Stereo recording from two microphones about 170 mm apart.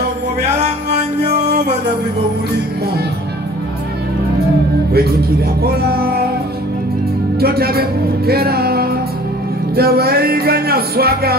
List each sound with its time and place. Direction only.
4.9 s speech: 70° right (ahead or behind)
7.3 s speech: 65° right (ahead or behind)
8.3 s music: 65° right (ahead or behind)